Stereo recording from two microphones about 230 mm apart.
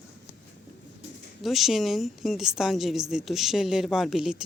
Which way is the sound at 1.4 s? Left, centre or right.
Centre.